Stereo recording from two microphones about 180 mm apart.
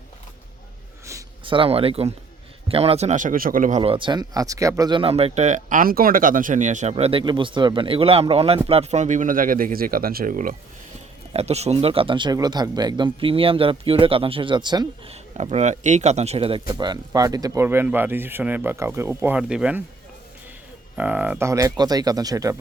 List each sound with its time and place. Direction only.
1.5 s speech: 30° right (ahead or behind); by 10.5 s 50° right (ahead or behind)
11.3 s speech: 35° right (ahead or behind)
15.1 s speech: 40° right (ahead or behind); by 19.8 s 5° right (ahead or behind)
20.9 s speech: 10° right (ahead or behind)